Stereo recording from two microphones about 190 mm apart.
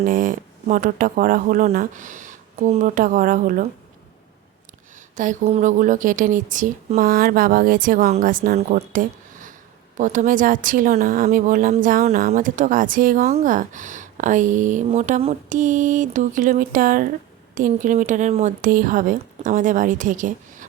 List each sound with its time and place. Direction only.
0.0 s a woman's voice: 45° right (ahead or behind)
5.1 s a woman's voice: 40° right (ahead or behind)